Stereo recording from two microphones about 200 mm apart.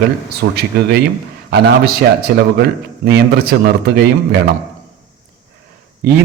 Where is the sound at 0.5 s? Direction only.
55° right (ahead or behind).